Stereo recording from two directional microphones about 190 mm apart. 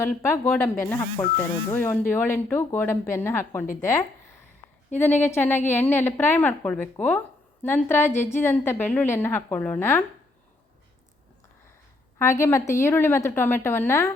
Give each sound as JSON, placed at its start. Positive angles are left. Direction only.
{"t": 0.0, "sound": "a woman's voice", "side_deg": 15}
{"t": 0.9, "sound": "speech", "side_deg": 25}
{"t": 1.7, "sound": "a woman's voice", "side_deg": 10}
{"t": 4.9, "sound": "a woman's voice", "side_deg": 10}
{"t": 12.2, "sound": "a woman's voice", "side_deg": 15}